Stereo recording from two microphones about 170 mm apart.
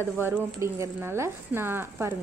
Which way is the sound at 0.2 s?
15° right (ahead or behind).